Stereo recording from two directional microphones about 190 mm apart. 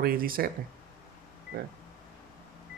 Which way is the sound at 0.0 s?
50° right (ahead or behind).